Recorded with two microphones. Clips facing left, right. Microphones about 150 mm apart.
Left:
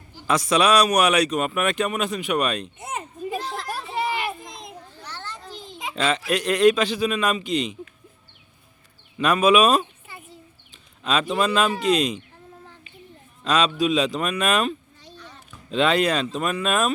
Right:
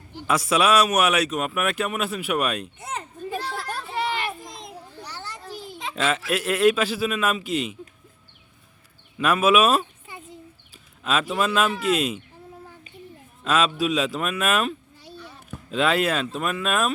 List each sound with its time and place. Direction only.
0.3 s speech: 5° right (ahead or behind)
2.7 s speech: 20° left (ahead or behind)
3.2 s children playing: 15° left (ahead or behind)
3.5 s a sound: centre (ahead or behind)
4.4 s children playing: centre (ahead or behind)
6.0 s speech: 5° right (ahead or behind)
9.1 s speech: 5° right (ahead or behind)
10.1 s a sound: 20° right (ahead or behind)
11.0 s speech: 5° right (ahead or behind)
13.4 s speech: 5° right (ahead or behind)